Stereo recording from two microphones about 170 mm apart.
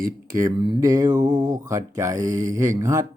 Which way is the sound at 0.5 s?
25° right (ahead or behind).